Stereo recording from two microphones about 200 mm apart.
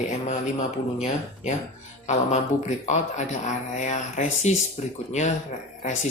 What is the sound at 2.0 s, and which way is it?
Speech, 35° left (ahead or behind).